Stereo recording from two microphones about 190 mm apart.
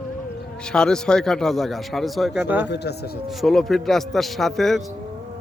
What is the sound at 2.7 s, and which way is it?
Speech, 60° left (ahead or behind).